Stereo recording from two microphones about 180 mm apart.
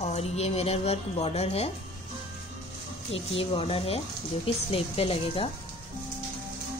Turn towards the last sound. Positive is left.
turn(degrees=30)  # may be behind; listen again after turning